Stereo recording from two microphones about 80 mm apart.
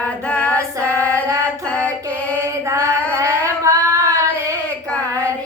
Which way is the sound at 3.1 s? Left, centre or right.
Right.